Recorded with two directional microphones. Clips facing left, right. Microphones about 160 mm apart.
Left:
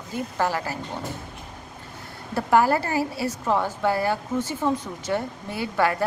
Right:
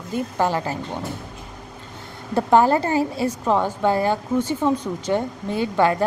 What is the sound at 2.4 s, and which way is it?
A woman's voice, 20° right (ahead or behind).